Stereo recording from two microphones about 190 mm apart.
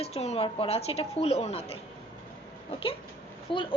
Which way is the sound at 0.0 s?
35° left (ahead or behind).